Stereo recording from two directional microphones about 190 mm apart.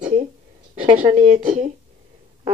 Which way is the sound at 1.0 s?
40° right (ahead or behind).